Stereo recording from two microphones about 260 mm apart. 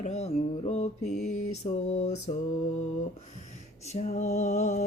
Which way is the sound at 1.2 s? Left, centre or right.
Left.